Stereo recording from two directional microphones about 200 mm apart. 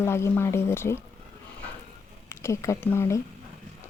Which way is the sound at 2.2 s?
15° left (ahead or behind).